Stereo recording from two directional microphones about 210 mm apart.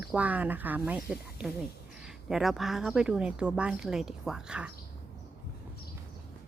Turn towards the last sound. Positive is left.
turn(degrees=-5)  # may be behind; listen again after turning